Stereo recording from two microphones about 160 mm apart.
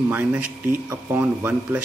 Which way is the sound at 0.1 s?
10° right (ahead or behind).